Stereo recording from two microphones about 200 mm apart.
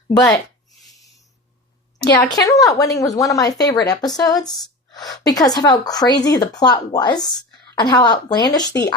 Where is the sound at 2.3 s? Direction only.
20° left (ahead or behind).